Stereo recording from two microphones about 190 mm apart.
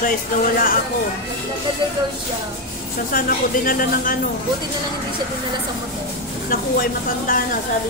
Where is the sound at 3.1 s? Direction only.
50° left (ahead or behind).